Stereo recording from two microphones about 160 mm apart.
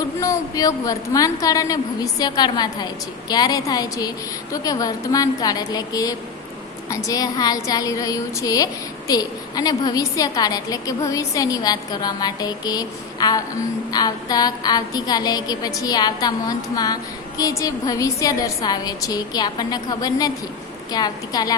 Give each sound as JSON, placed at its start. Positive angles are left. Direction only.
{"t": 0.2, "sound": "a woman's voice", "side_deg": 20}